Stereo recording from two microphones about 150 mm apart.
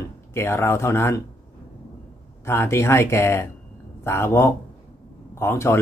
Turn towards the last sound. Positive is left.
turn(degrees=20)  # may be behind; listen again after turning